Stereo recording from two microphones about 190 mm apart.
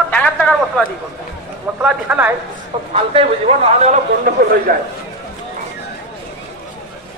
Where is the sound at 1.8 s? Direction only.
5° right (ahead or behind).